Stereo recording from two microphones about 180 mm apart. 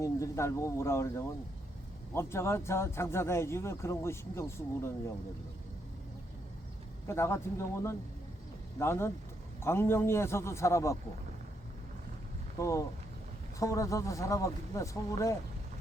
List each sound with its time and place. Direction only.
0.0 s a man's voice: 15° left (ahead or behind)
7.1 s a man's voice: 15° left (ahead or behind)
12.5 s a man's voice: 15° left (ahead or behind)